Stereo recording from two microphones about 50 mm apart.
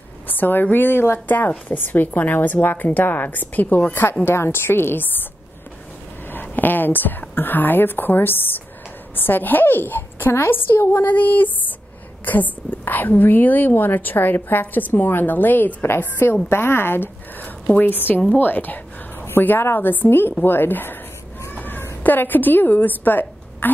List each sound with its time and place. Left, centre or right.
0.3 s a woman's voice: left
6.3 s a woman's voice: left
15.8 s a woman's voice: left
21.5 s a sound: left
22.0 s a woman's voice: left